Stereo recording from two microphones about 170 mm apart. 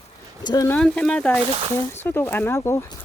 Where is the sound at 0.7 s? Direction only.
5° left (ahead or behind).